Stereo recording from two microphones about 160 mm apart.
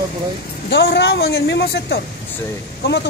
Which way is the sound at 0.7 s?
90° left.